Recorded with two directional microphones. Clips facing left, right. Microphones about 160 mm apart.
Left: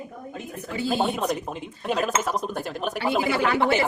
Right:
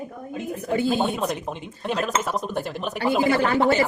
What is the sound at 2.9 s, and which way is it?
Speech, 45° right (ahead or behind).